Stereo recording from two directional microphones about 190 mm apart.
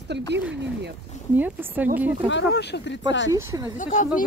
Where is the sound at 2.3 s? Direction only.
65° left (ahead or behind).